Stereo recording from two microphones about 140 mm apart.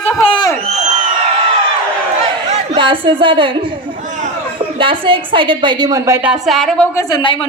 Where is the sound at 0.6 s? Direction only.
55° right (ahead or behind).